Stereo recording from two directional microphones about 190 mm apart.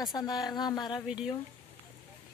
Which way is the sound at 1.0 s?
5° right (ahead or behind).